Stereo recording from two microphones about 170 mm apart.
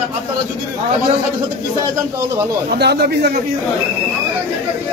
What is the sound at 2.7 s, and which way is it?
Speech, 75° right (ahead or behind).